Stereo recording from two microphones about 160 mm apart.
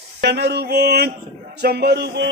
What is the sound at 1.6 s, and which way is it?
Speech, 85° right.